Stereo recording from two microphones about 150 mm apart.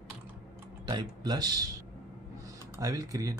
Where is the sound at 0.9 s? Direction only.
30° right (ahead or behind).